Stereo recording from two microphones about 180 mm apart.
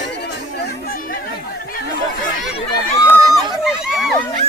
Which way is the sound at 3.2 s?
Centre (ahead or behind).